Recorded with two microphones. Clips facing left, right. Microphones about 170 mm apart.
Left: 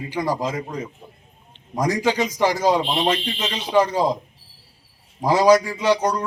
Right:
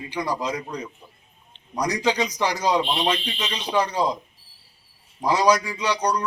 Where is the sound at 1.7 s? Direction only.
45° left (ahead or behind).